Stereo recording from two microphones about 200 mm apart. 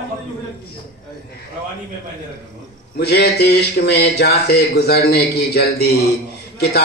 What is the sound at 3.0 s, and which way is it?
A man's voice, 55° left (ahead or behind).